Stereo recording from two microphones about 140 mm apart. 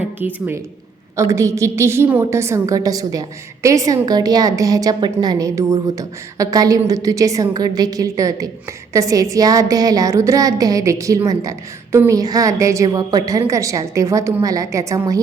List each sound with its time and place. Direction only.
0.2 s a woman's voice: 10° right (ahead or behind)